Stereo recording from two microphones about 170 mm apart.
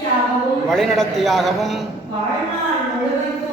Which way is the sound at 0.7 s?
Centre (ahead or behind).